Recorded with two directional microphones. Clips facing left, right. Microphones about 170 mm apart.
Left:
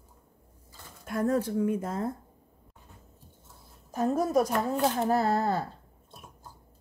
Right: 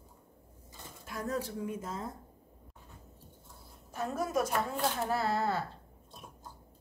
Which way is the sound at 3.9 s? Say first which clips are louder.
Left 7 dB; 35° left (ahead or behind).